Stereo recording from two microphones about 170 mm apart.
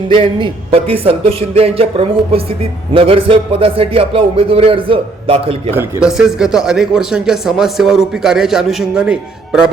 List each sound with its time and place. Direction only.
0.1 s a man's voice: 30° right (ahead or behind)
5.7 s speech: 5° right (ahead or behind)